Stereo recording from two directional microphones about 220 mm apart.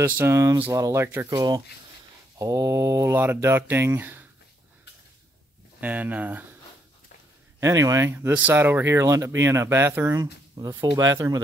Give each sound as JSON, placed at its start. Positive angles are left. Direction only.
{"t": 0.0, "sound": "speech", "side_deg": -10}
{"t": 5.8, "sound": "speech", "side_deg": -5}
{"t": 7.6, "sound": "speech", "side_deg": -15}